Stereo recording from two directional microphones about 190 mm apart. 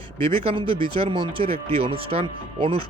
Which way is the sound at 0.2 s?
30° right (ahead or behind).